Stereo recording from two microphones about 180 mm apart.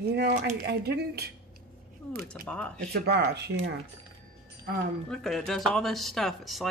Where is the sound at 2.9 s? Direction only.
65° right (ahead or behind).